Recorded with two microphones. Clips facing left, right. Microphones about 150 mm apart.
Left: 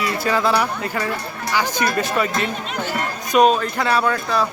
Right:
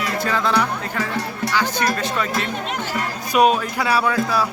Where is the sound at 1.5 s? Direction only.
10° left (ahead or behind).